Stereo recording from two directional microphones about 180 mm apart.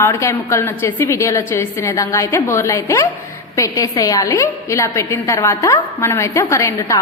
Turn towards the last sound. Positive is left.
turn(degrees=15)  # may be behind; listen again after turning